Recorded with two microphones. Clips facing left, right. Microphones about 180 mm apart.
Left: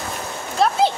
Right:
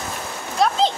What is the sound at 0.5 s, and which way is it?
Speech, 10° left (ahead or behind).